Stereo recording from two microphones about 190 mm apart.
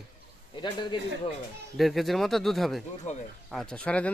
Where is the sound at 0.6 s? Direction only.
25° left (ahead or behind).